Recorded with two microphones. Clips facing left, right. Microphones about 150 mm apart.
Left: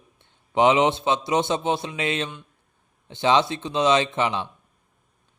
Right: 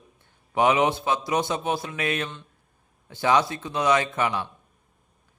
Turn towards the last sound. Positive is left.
turn(degrees=20)  # may be behind; listen again after turning